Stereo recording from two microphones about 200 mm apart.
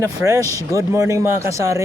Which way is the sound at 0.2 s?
5° right (ahead or behind).